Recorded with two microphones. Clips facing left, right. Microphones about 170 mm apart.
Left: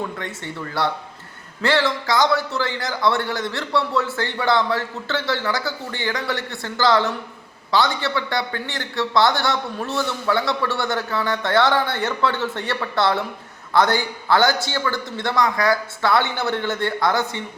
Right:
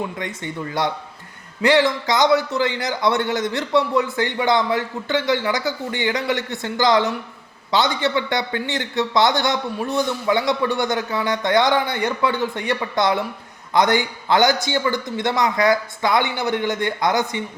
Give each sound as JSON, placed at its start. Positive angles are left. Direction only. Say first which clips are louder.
{"t": 0.0, "sound": "a man's voice", "louder": "right 2 dB", "side_deg": -15}